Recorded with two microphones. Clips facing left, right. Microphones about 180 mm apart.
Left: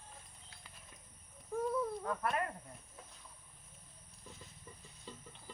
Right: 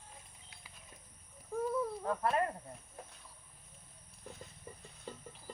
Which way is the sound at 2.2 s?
30° right (ahead or behind).